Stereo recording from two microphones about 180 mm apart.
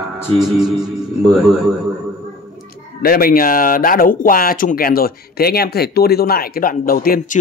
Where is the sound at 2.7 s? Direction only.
55° left (ahead or behind).